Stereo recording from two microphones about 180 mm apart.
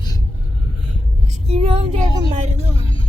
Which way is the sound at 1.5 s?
35° right (ahead or behind).